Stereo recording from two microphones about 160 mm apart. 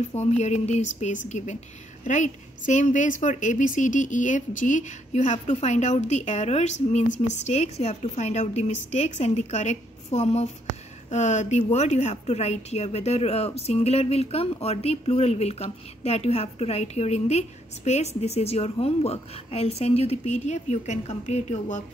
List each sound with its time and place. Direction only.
0.1 s a woman's voice: 45° left (ahead or behind)